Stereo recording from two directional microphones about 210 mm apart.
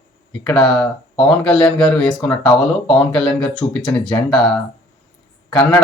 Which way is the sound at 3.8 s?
5° left (ahead or behind).